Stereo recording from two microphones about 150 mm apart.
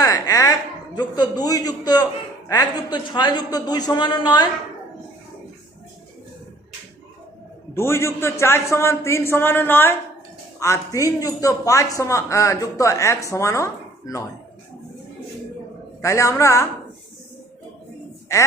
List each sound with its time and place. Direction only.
0.0 s a sound: 25° left (ahead or behind)
0.9 s a man's voice: 25° left (ahead or behind)
7.7 s a man's voice: 15° left (ahead or behind)
16.0 s a man's voice: 20° left (ahead or behind)